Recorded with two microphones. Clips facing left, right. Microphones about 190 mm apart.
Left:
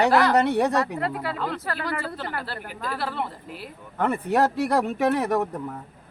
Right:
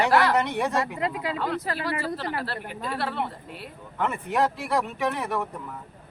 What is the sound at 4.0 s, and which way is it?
Speech, 40° left (ahead or behind).